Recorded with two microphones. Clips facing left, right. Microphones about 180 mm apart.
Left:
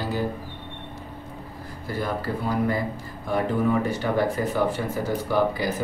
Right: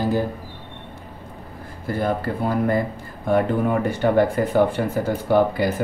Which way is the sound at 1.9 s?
55° right (ahead or behind).